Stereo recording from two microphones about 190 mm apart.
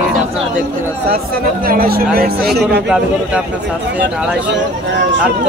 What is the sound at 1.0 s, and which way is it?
Speech, 50° right (ahead or behind).